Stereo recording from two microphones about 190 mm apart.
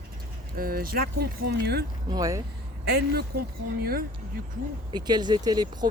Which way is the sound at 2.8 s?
55° right (ahead or behind).